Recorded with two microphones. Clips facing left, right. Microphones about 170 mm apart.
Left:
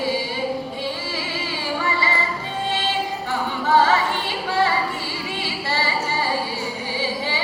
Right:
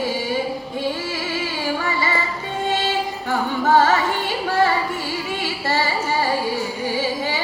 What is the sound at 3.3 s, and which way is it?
Singing, 45° right (ahead or behind).